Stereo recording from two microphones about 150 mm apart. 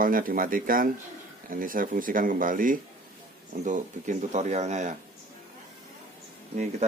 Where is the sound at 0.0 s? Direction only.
70° right (ahead or behind); by 4.9 s 50° right (ahead or behind).